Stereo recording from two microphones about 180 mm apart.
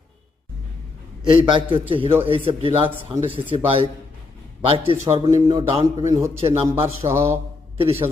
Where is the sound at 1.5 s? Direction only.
30° right (ahead or behind).